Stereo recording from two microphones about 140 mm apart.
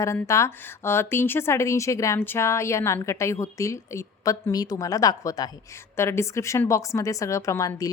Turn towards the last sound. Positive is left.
turn(degrees=25)  # may be behind; listen again after turning